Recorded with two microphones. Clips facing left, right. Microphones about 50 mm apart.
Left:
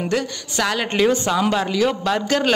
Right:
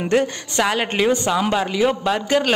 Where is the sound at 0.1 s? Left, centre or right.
Right.